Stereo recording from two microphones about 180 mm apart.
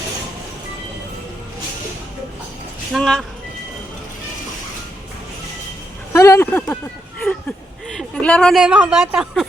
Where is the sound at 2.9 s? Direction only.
Centre (ahead or behind).